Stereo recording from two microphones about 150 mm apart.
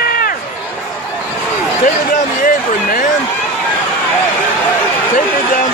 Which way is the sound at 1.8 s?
60° left (ahead or behind).